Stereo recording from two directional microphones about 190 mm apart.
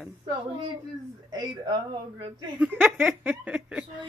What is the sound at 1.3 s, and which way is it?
Speech, 20° right (ahead or behind).